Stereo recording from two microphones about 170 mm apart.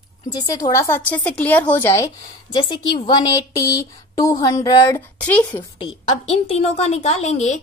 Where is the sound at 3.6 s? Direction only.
20° left (ahead or behind).